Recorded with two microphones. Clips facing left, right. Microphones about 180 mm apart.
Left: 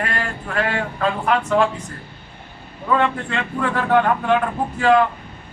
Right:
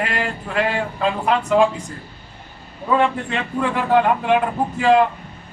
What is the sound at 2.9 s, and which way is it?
Speech, 15° right (ahead or behind).